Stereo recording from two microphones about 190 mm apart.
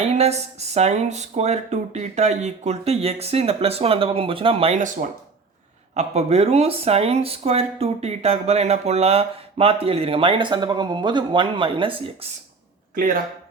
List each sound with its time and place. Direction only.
0.1 s speech: 35° right (ahead or behind)
5.9 s speech: 35° right (ahead or behind)